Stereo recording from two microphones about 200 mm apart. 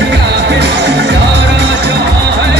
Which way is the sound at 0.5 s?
60° right (ahead or behind).